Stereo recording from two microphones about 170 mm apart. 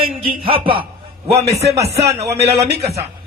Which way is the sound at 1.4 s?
75° right (ahead or behind).